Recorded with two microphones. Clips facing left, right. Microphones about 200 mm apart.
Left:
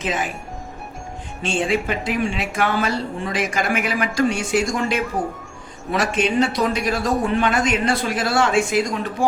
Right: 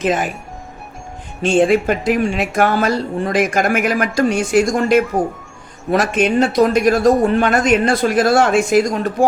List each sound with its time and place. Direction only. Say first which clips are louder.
0.0 s speech: right 7 dB; 50° right (ahead or behind)
1.4 s speech: right 8 dB; 50° right (ahead or behind)